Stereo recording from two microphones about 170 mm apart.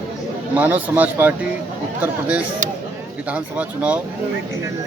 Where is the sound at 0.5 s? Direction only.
10° right (ahead or behind).